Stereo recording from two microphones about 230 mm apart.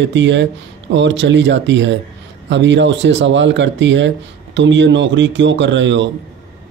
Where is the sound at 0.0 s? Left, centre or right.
Right.